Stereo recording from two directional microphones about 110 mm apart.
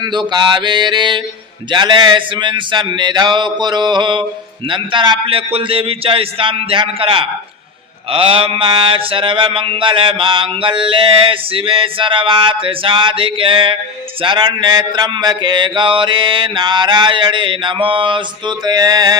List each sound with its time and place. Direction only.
0.0 s mantra: 40° right (ahead or behind)
5.2 s a man's voice: 60° right (ahead or behind)
8.1 s mantra: 55° right (ahead or behind); by 19.1 s 35° right (ahead or behind)